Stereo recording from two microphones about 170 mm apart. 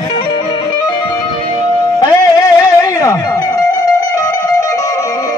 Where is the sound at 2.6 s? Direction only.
20° left (ahead or behind).